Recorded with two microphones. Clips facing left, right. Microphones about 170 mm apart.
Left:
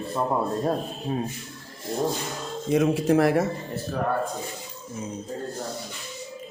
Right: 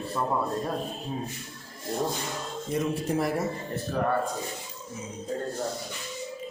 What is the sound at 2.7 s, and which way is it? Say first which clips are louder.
Speech: left 8 dB; 90° left.